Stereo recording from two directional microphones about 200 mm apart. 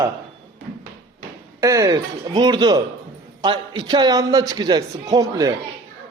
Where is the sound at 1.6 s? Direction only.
15° right (ahead or behind).